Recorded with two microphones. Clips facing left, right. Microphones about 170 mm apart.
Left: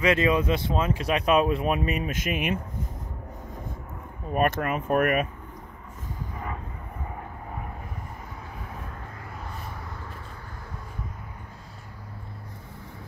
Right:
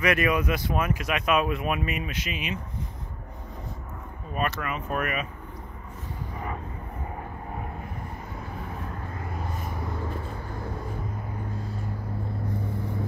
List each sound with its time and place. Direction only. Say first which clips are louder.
0.0 s speech: left 2 dB; 25° left (ahead or behind); by 2.6 s 55° left (ahead or behind)
4.3 s speech: left 5 dB; 50° left (ahead or behind)